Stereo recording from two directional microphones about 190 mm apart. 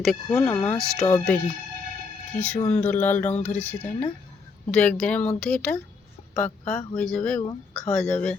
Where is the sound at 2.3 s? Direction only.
10° left (ahead or behind).